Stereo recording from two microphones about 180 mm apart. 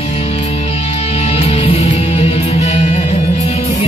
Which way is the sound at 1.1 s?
35° left (ahead or behind).